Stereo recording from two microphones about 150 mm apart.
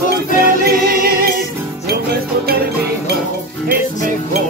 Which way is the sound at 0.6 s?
90° right.